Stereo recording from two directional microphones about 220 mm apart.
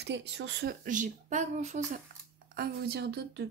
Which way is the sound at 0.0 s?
50° right (ahead or behind).